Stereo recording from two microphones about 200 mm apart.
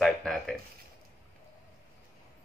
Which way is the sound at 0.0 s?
Centre (ahead or behind).